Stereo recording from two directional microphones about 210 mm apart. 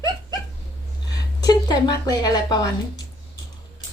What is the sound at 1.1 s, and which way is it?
Speech, 20° left (ahead or behind).